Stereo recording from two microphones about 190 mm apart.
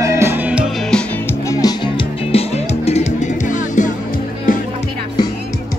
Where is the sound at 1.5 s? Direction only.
20° left (ahead or behind).